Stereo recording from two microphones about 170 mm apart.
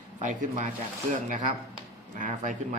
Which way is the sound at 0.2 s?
45° right (ahead or behind).